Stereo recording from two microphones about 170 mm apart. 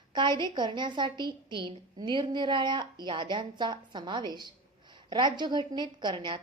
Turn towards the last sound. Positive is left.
turn(degrees=-30)  # may be behind; listen again after turning